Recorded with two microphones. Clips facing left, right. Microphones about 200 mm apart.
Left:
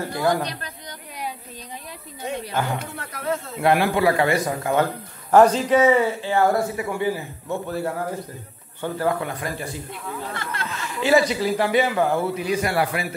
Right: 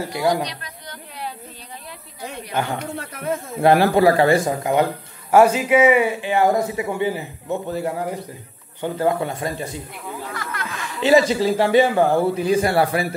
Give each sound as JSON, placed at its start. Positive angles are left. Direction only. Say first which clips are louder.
{"t": 0.0, "sound": "speech", "louder": "right 1 dB", "side_deg": -15}
{"t": 0.8, "sound": "a sound", "louder": "right 1 dB", "side_deg": 15}
{"t": 2.5, "sound": "a man's voice", "louder": "right 6 dB", "side_deg": -20}
{"t": 3.5, "sound": "speech", "louder": "right 5 dB", "side_deg": -35}
{"t": 5.3, "sound": "a man's voice", "louder": "right 1 dB", "side_deg": -10}
{"t": 10.3, "sound": "speech", "louder": "even", "side_deg": 30}
{"t": 10.7, "sound": "a man's voice", "louder": "right 3 dB", "side_deg": -20}